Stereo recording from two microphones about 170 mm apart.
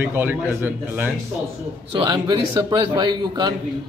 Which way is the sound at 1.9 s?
25° right (ahead or behind).